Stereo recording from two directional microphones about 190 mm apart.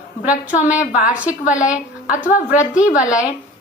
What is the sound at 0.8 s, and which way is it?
Speech, 45° left (ahead or behind).